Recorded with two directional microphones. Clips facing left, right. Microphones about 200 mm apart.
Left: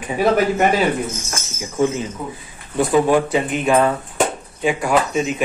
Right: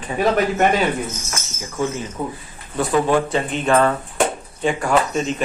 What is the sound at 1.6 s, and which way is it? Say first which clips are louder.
Speech: left 5 dB; 15° left (ahead or behind).